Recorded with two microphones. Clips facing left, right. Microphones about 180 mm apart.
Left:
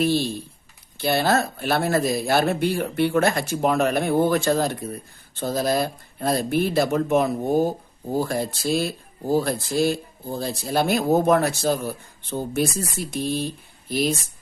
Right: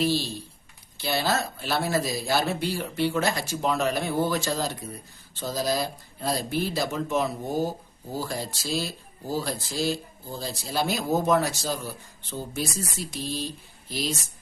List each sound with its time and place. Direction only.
0.0 s speech: 55° left (ahead or behind)